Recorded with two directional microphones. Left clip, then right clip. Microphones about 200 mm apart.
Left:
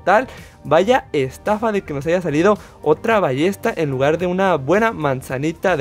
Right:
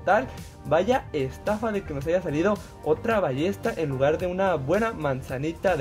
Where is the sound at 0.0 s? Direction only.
45° left (ahead or behind).